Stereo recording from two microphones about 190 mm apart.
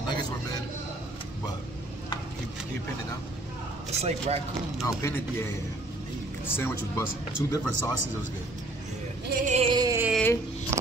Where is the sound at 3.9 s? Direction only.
35° right (ahead or behind).